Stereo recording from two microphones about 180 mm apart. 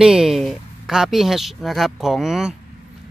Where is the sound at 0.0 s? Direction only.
5° right (ahead or behind).